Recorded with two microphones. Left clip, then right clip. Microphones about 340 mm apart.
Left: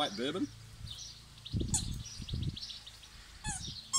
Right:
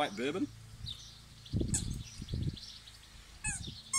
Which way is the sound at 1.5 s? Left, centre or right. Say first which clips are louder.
Right 3 dB; right.